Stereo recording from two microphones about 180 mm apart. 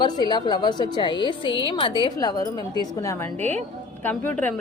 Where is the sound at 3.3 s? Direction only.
40° right (ahead or behind).